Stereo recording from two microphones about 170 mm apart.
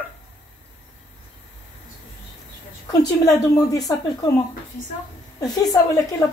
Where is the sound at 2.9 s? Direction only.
20° left (ahead or behind).